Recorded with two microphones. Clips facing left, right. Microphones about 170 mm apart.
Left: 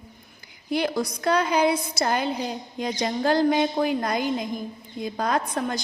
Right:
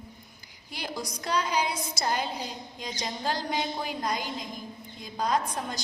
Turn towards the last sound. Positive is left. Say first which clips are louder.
# left 4 dB
turn(degrees=60)  # may be behind; listen again after turning